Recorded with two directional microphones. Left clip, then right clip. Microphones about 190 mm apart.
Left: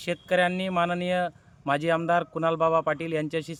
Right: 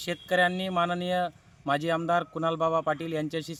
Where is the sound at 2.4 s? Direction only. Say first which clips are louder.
Left 3 dB; 30° left (ahead or behind).